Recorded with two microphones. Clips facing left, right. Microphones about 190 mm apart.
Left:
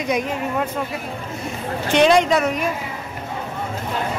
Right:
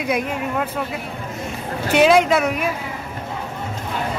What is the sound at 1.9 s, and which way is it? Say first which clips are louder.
Speech: right 1 dB; 5° right (ahead or behind).